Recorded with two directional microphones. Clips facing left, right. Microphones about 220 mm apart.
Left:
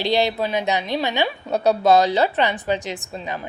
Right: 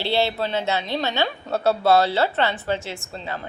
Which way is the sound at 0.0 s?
15° left (ahead or behind).